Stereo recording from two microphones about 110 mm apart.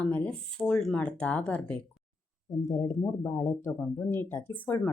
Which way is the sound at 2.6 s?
30° left (ahead or behind).